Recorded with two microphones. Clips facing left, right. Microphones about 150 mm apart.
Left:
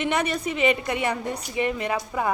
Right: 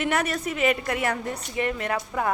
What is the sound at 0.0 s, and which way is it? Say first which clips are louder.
A woman's voice: left 1 dB; 5° right (ahead or behind).